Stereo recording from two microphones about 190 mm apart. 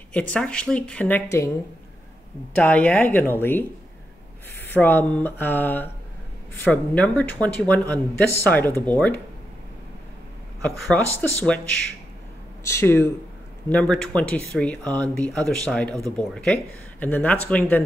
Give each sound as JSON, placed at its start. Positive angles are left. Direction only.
{"t": 0.1, "sound": "speech", "side_deg": 5}
{"t": 2.5, "sound": "speech", "side_deg": 10}
{"t": 4.7, "sound": "speech", "side_deg": 10}
{"t": 10.6, "sound": "speech", "side_deg": 10}
{"t": 12.6, "sound": "speech", "side_deg": 15}